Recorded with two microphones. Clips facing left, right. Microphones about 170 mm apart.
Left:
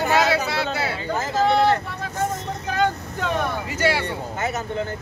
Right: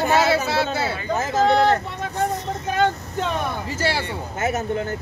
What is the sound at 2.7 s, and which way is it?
Vehicle, 25° right (ahead or behind).